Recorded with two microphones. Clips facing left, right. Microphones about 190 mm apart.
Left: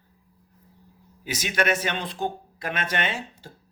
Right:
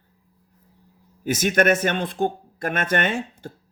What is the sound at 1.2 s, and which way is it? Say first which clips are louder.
Speech: right 7 dB; 50° right (ahead or behind).